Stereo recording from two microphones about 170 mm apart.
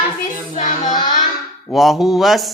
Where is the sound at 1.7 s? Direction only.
Centre (ahead or behind).